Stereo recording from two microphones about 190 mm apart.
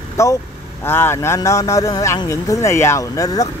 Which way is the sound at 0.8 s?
10° left (ahead or behind).